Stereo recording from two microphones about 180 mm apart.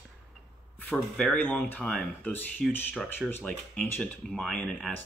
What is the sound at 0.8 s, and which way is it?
Speech, 5° left (ahead or behind).